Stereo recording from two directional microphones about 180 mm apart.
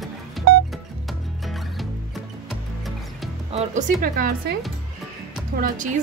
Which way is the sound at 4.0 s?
50° right (ahead or behind).